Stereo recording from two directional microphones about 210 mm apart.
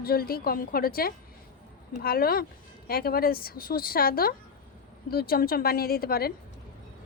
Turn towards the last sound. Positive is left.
turn(degrees=45)  # may be behind; listen again after turning